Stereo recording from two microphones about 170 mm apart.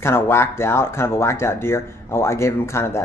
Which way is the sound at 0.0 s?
15° left (ahead or behind).